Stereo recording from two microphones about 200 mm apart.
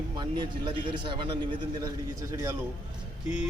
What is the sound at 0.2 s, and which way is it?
A man's voice, 25° right (ahead or behind).